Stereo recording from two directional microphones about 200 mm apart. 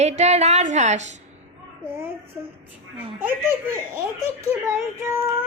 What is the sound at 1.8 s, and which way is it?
Speech, 10° right (ahead or behind).